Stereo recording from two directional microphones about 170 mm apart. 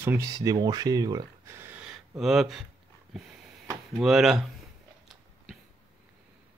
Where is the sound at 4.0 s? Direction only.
Centre (ahead or behind).